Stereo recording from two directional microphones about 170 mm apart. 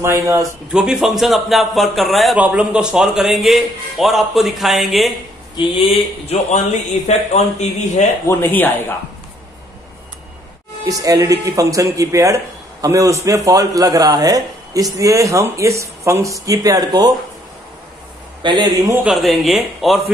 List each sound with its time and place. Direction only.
0.0 s speech: 20° right (ahead or behind)
0.7 s a man's voice: 5° right (ahead or behind)
5.6 s a man's voice: 35° left (ahead or behind)
8.3 s speech: 10° left (ahead or behind)
10.9 s speech: 20° right (ahead or behind)
18.4 s speech: 25° right (ahead or behind)
19.0 s a man's voice: centre (ahead or behind)